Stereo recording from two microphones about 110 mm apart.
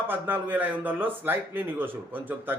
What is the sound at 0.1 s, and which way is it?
Speech, 15° right (ahead or behind).